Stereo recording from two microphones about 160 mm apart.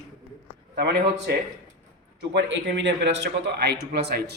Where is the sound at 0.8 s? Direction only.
90° right.